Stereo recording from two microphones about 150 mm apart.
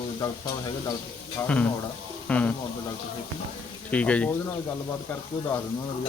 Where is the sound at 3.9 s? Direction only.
10° left (ahead or behind).